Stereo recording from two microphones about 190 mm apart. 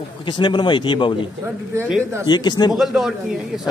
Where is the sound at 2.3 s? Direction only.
20° left (ahead or behind).